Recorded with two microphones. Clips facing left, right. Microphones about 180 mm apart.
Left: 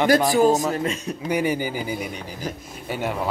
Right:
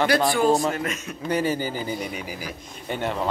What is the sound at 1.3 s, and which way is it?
Speech, 15° left (ahead or behind).